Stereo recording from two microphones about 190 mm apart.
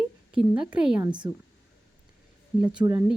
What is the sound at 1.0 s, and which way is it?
Speech, 25° right (ahead or behind).